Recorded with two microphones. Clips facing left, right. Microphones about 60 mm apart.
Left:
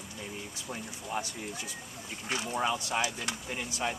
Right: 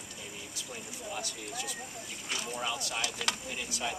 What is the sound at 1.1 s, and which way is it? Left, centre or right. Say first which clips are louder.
Speech: left 4 dB; left.